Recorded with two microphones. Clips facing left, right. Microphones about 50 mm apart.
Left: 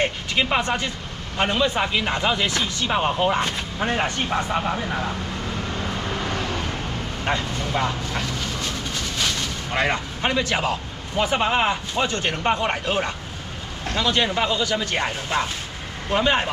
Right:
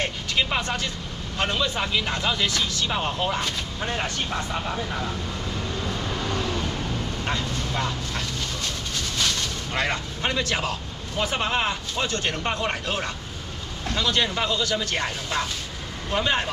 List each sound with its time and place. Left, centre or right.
0.0 s speech: left
7.2 s speech: centre